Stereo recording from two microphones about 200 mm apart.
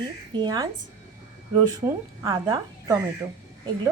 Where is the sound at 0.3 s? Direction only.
20° right (ahead or behind).